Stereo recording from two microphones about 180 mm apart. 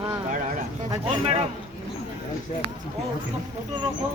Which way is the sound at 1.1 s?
35° right (ahead or behind).